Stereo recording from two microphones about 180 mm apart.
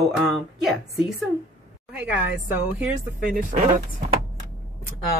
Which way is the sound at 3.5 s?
45° right (ahead or behind).